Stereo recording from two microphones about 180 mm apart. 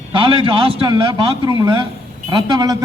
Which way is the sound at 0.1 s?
30° right (ahead or behind).